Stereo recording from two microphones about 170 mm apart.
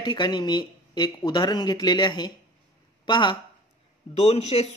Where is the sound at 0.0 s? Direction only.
25° left (ahead or behind).